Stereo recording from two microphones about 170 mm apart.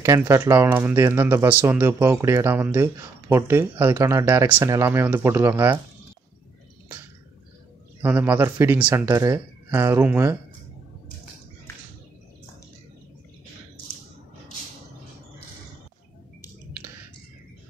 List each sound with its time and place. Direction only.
0.0 s speech: 15° right (ahead or behind)
8.0 s speech: 10° right (ahead or behind)